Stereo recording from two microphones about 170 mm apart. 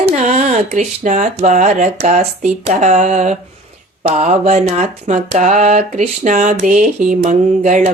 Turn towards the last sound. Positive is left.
turn(degrees=-45)  # may be behind; listen again after turning